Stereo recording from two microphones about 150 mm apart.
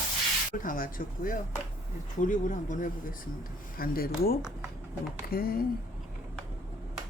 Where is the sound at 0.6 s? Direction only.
65° left (ahead or behind).